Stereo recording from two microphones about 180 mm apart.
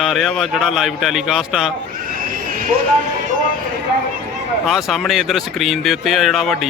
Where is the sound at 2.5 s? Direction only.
50° right (ahead or behind).